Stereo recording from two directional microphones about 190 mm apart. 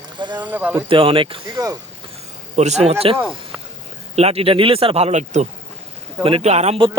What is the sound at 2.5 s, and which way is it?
Speech, 35° right (ahead or behind).